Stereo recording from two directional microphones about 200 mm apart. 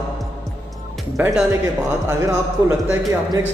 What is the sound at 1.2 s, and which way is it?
A man's voice, 5° right (ahead or behind).